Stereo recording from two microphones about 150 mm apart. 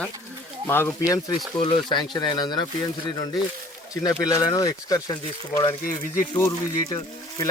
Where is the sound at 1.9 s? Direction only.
30° left (ahead or behind).